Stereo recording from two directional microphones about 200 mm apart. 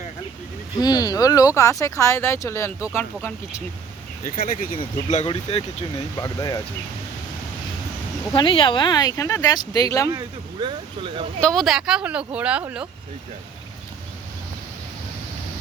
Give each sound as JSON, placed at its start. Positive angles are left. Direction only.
{"t": 0.8, "sound": "speech", "side_deg": 20}
{"t": 4.2, "sound": "speech", "side_deg": 45}
{"t": 4.8, "sound": "speech", "side_deg": 35}
{"t": 6.1, "sound": "speech", "side_deg": 20}
{"t": 8.3, "sound": "speech", "side_deg": 25}
{"t": 10.1, "sound": "speech", "side_deg": -20}
{"t": 11.3, "sound": "speech", "side_deg": 5}